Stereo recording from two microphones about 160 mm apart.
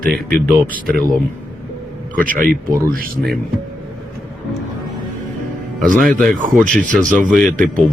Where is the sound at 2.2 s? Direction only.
10° left (ahead or behind).